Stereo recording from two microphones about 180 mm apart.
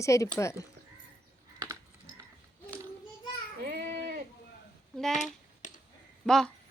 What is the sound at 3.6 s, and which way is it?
Baby cry, 60° right (ahead or behind).